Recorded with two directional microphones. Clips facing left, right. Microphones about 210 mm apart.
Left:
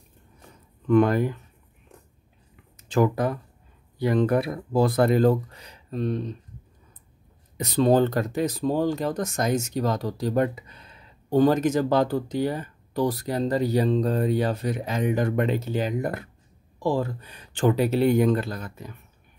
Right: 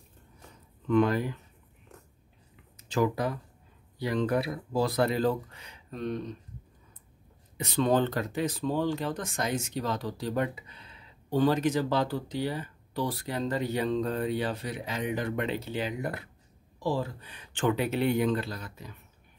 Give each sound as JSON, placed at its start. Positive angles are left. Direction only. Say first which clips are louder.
{"t": 0.8, "sound": "speech", "louder": "left 5 dB", "side_deg": 50}
{"t": 2.8, "sound": "speech", "louder": "left 5 dB", "side_deg": 50}
{"t": 7.5, "sound": "speech", "louder": "left 6 dB", "side_deg": 40}